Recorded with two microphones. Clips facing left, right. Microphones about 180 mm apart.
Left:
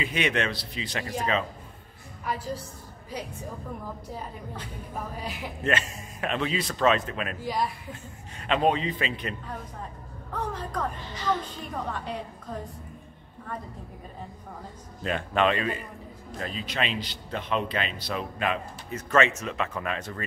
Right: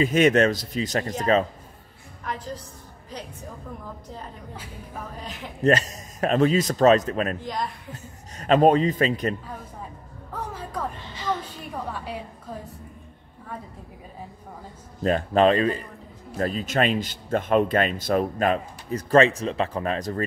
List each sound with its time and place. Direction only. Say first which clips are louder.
0.0 s a man's voice: right 9 dB; 45° right (ahead or behind)
2.2 s a woman's voice: left 1 dB; 10° left (ahead or behind)
5.2 s a woman's voice: left 2 dB; 10° left (ahead or behind)
5.6 s a man's voice: right 8 dB; 40° right (ahead or behind)
7.3 s a woman's voice: left 1 dB; 5° left (ahead or behind)
8.4 s a man's voice: right 7 dB; 45° right (ahead or behind)
10.3 s music: left 1 dB; 5° right (ahead or behind)
11.9 s a woman's voice: even; 5° right (ahead or behind)
15.0 s a man's voice: right 6 dB; 35° right (ahead or behind)